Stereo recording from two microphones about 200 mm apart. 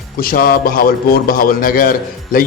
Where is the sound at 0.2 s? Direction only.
45° left (ahead or behind).